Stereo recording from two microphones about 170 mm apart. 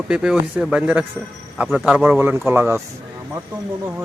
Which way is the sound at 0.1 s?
5° right (ahead or behind).